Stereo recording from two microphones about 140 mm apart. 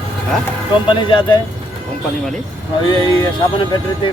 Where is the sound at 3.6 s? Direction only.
35° left (ahead or behind).